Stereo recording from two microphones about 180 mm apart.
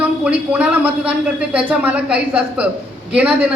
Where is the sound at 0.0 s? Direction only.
5° right (ahead or behind).